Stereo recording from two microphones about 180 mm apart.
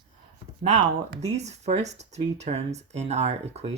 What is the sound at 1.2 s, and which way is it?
Speech, 40° right (ahead or behind).